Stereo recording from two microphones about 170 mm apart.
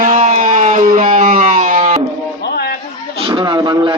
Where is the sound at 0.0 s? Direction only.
50° right (ahead or behind).